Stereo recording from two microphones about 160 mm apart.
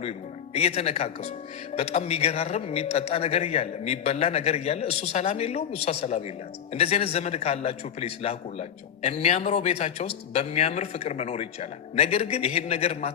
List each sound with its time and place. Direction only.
0.5 s a man's voice: 40° left (ahead or behind)